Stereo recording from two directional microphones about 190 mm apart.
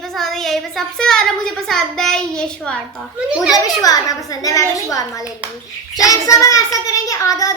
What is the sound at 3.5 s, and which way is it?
A child's voice, 20° left (ahead or behind).